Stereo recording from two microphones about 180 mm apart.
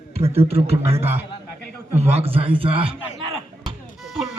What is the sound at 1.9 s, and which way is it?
A man's voice, 35° right (ahead or behind).